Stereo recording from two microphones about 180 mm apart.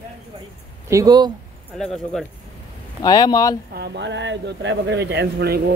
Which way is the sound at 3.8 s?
80° right.